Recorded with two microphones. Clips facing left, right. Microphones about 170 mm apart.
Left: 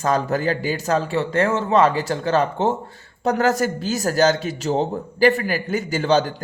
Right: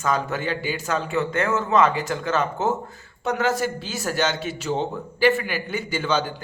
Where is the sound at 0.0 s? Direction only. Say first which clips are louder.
Left 4 dB; 40° left (ahead or behind).